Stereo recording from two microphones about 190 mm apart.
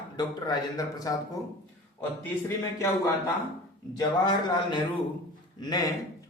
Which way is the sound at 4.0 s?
25° left (ahead or behind).